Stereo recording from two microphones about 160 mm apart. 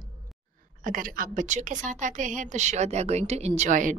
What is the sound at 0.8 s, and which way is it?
A woman's voice, 60° right (ahead or behind).